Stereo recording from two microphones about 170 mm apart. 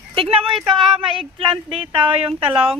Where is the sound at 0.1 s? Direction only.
35° right (ahead or behind).